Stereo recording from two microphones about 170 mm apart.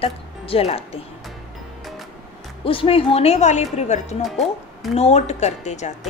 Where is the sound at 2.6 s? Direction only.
30° left (ahead or behind).